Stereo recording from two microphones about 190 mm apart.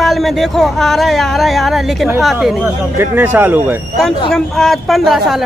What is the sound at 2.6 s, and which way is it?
Speech, 10° right (ahead or behind).